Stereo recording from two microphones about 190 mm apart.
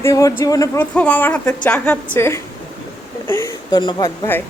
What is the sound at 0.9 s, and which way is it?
Speech, 5° left (ahead or behind).